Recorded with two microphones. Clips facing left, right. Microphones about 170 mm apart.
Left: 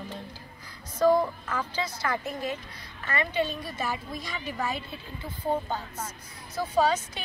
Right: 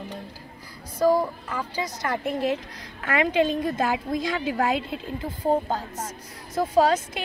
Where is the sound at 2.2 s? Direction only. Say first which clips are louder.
Right 7 dB; 75° right (ahead or behind).